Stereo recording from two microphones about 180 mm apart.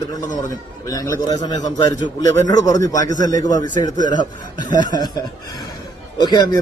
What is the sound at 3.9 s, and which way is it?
Speech, 45° right (ahead or behind).